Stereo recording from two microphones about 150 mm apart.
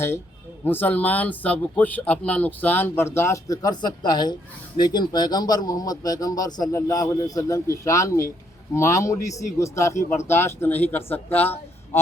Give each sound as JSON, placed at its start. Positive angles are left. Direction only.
{"t": 0.6, "sound": "a man's voice", "side_deg": 15}